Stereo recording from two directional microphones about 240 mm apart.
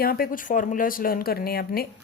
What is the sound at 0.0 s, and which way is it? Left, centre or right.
A woman's voice, left.